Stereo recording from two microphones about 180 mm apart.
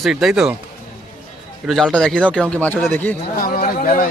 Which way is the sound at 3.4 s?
50° left (ahead or behind).